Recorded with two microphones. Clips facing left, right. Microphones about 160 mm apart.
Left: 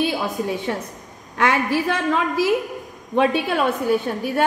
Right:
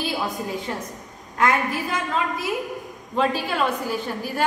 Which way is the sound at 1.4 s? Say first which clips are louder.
Left 2 dB; 75° left (ahead or behind).